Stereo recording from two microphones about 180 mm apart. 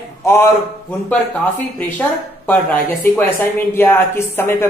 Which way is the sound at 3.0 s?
10° left (ahead or behind).